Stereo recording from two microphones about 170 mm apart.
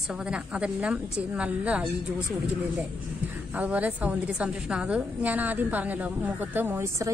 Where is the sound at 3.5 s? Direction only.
10° right (ahead or behind).